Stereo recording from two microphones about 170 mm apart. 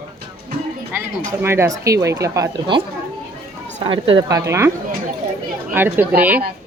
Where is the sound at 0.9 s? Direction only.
15° right (ahead or behind).